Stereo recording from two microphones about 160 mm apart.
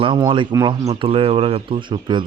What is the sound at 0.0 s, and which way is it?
Speech, 30° right (ahead or behind).